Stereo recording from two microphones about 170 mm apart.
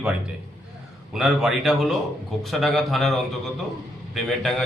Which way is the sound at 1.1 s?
Centre (ahead or behind).